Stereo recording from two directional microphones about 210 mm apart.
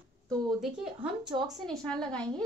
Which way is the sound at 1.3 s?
20° right (ahead or behind).